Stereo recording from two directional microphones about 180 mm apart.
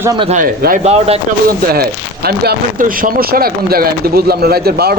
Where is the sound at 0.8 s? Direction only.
35° right (ahead or behind).